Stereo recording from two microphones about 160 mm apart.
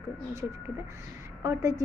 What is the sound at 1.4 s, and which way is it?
Speech, 20° right (ahead or behind).